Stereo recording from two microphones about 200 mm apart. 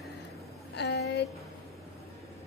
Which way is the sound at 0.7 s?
55° left (ahead or behind).